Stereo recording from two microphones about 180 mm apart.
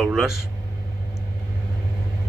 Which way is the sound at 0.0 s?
5° right (ahead or behind).